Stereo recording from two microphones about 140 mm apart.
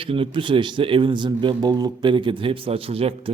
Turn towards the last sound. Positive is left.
turn(degrees=-45)  # may be behind; listen again after turning